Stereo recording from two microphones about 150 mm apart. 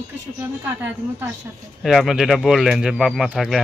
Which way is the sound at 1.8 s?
Centre (ahead or behind).